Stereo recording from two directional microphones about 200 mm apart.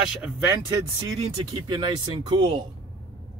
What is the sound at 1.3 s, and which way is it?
Speech, 25° right (ahead or behind).